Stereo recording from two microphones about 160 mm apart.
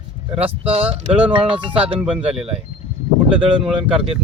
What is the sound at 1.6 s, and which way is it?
Speech, 35° right (ahead or behind).